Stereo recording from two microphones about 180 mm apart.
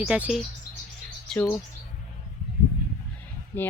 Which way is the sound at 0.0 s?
5° right (ahead or behind).